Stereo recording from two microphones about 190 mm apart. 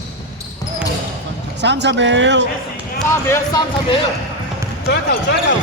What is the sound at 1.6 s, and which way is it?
Speech, 65° right (ahead or behind).